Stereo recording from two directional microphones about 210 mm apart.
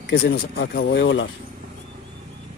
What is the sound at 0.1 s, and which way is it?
Speech, 50° left (ahead or behind).